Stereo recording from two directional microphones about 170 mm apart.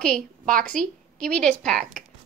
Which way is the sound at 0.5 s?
5° left (ahead or behind).